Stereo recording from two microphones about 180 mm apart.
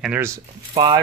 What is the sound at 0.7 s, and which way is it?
Speech, 25° right (ahead or behind).